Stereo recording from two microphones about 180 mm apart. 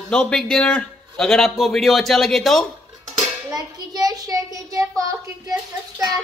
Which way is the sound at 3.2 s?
20° right (ahead or behind).